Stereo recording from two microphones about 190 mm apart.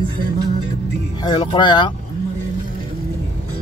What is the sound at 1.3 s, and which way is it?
Speech, 25° left (ahead or behind).